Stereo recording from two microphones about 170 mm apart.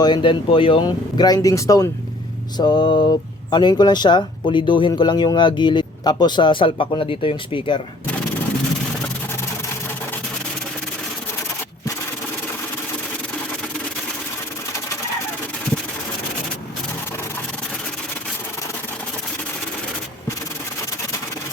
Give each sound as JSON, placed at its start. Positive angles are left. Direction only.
{"t": 0.0, "sound": "speech", "side_deg": 25}